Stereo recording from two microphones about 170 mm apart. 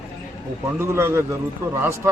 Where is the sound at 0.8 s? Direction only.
15° right (ahead or behind).